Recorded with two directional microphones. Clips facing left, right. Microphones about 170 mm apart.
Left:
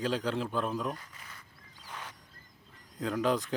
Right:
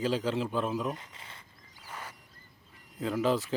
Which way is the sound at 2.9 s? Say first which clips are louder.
Right 1 dB; 5° right (ahead or behind).